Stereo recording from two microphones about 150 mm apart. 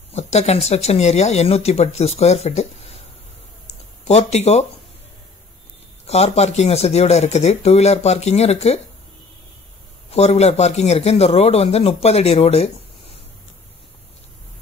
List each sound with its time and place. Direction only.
0.1 s speech: 45° left (ahead or behind)
4.0 s speech: 45° left (ahead or behind)
6.0 s speech: 45° left (ahead or behind)
10.1 s speech: 45° left (ahead or behind)